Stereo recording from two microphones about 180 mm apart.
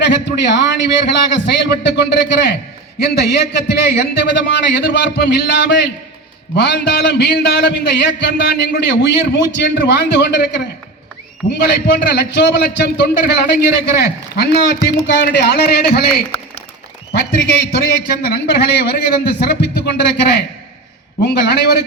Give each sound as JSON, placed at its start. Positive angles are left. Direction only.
{"t": 0.0, "sound": "a man's voice", "side_deg": 75}
{"t": 17.7, "sound": "a man's voice", "side_deg": 60}